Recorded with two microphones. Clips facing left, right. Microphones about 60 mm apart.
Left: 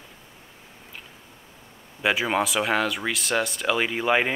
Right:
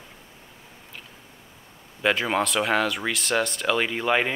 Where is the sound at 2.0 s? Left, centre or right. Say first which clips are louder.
Even; centre.